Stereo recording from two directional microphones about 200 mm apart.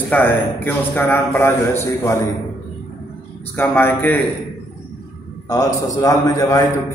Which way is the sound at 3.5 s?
10° left (ahead or behind).